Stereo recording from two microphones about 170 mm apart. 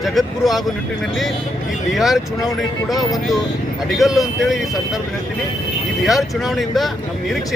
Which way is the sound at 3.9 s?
Centre (ahead or behind).